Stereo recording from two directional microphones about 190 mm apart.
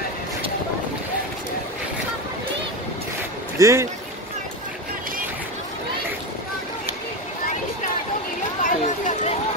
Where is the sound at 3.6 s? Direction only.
15° right (ahead or behind).